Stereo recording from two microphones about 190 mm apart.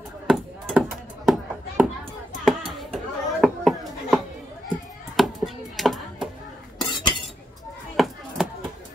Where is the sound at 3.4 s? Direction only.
Centre (ahead or behind).